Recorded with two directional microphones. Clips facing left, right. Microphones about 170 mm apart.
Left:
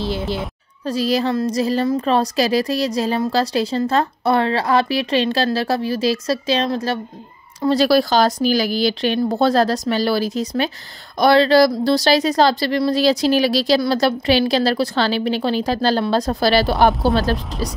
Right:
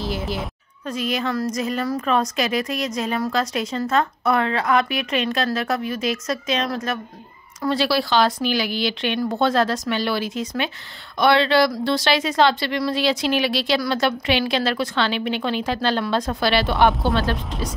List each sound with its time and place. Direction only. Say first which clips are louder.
0.8 s a woman's voice: left 6 dB; 35° left (ahead or behind)
7.7 s a woman's voice: left 5 dB; 45° left (ahead or behind)